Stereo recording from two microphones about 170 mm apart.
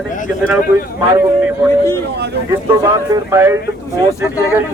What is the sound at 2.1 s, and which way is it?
Speech, 75° right (ahead or behind).